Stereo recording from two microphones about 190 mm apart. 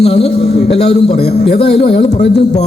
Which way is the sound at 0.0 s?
35° left (ahead or behind).